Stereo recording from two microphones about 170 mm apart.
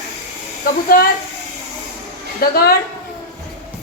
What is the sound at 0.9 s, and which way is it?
Speech, 55° left (ahead or behind).